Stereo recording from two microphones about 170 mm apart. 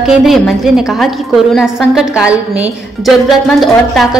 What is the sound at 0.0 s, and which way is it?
A woman's voice, centre (ahead or behind).